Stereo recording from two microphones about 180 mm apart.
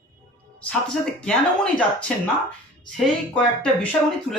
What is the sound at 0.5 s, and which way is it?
A man's voice, 5° left (ahead or behind).